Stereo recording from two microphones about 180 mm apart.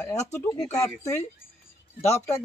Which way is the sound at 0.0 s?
15° left (ahead or behind).